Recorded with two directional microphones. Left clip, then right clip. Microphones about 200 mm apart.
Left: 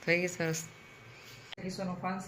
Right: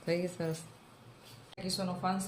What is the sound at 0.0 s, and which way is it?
Speech, 5° right (ahead or behind).